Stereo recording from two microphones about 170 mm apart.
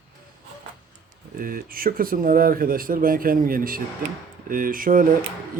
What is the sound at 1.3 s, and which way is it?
Speech, 55° right (ahead or behind).